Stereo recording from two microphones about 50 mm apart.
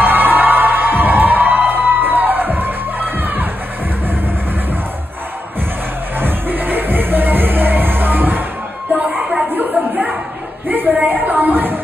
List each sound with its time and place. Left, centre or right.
0.0 s music: right
6.1 s music: right
10.7 s a sound: right